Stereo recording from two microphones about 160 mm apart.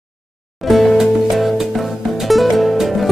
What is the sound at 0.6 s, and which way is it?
Music, centre (ahead or behind).